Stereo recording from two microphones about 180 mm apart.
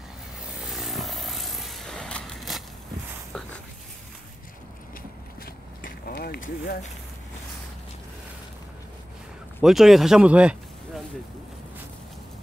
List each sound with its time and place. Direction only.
0.6 s vehicle: centre (ahead or behind)
5.4 s a sound: 55° left (ahead or behind)
9.6 s speech: centre (ahead or behind)